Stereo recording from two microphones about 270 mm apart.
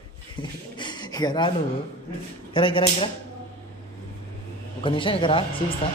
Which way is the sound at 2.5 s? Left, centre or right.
Centre.